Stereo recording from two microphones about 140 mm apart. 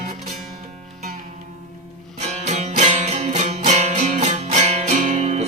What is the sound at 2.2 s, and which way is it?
Music, 55° right (ahead or behind).